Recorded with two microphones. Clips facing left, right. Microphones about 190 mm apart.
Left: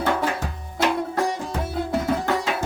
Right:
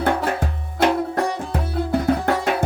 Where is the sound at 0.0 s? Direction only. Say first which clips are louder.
Right 2 dB; 60° right (ahead or behind).